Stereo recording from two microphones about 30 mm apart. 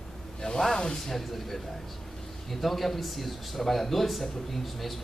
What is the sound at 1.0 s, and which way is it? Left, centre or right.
Speech, centre.